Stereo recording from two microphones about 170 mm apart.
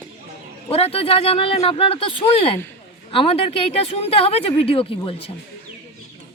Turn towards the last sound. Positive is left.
turn(degrees=35)  # may be behind; listen again after turning